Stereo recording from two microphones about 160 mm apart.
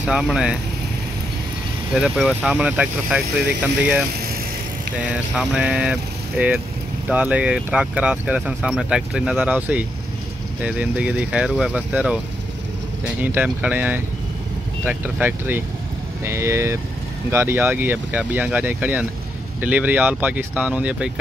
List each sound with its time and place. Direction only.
0.0 s speech: 5° right (ahead or behind)
2.0 s speech: 5° right (ahead or behind)
5.0 s speech: 5° right (ahead or behind)